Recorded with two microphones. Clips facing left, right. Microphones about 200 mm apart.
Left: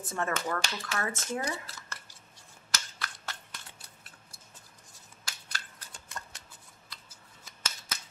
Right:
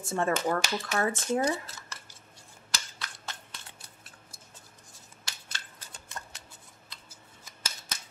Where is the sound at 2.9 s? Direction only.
20° right (ahead or behind).